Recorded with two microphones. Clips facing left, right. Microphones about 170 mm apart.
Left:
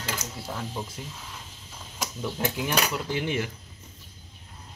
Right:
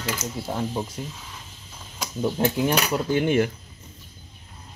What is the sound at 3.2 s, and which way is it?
Speech, 55° right (ahead or behind).